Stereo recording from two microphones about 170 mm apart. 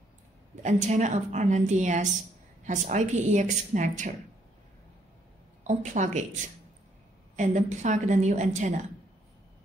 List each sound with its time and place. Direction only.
0.6 s a woman's voice: 45° right (ahead or behind)
5.6 s a woman's voice: 45° right (ahead or behind)
7.3 s a woman's voice: 45° right (ahead or behind)